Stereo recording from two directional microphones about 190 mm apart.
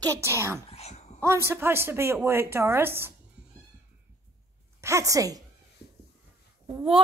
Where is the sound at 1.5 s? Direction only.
10° right (ahead or behind).